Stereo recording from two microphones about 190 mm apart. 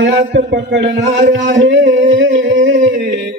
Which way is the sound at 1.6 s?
70° right (ahead or behind).